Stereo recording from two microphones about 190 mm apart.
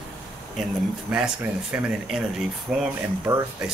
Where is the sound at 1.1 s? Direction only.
5° right (ahead or behind).